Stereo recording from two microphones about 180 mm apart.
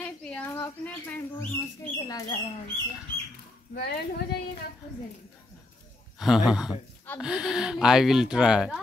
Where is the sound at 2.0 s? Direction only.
20° left (ahead or behind).